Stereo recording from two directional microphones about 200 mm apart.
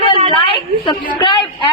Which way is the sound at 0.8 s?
20° left (ahead or behind).